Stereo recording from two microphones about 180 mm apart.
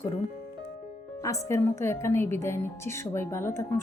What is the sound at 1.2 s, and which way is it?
Music, 15° left (ahead or behind).